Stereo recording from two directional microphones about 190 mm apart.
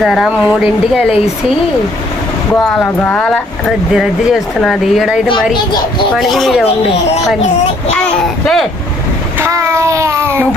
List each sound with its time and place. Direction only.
0.0 s speech: centre (ahead or behind)
2.6 s speech: 5° left (ahead or behind)
8.2 s speech: centre (ahead or behind)
9.4 s child singing: 15° right (ahead or behind)